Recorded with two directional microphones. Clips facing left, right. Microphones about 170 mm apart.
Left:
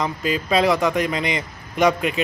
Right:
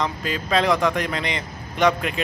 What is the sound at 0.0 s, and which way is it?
A man's voice, 10° left (ahead or behind).